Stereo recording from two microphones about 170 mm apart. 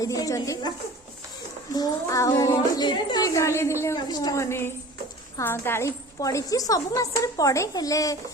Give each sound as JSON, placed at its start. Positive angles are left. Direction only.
{"t": 0.0, "sound": "a woman's voice", "side_deg": 20}
{"t": 1.7, "sound": "a woman's voice", "side_deg": 20}